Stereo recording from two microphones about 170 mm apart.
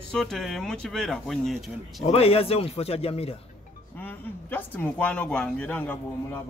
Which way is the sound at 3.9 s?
10° left (ahead or behind).